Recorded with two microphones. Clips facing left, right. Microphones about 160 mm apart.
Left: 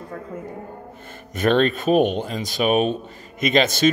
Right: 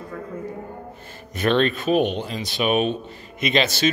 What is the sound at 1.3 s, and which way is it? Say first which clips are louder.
Speech: left 2 dB; 40° left (ahead or behind).